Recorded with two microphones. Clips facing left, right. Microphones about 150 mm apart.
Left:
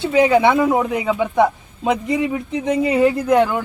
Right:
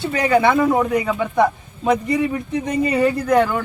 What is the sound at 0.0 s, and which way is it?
Speech, 20° left (ahead or behind).